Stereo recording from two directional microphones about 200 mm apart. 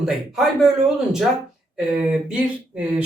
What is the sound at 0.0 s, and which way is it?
Speech, centre (ahead or behind).